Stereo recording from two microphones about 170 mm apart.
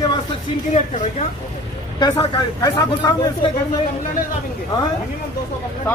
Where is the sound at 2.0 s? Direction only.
25° left (ahead or behind).